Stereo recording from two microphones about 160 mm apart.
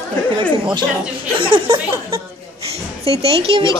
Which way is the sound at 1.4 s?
30° right (ahead or behind).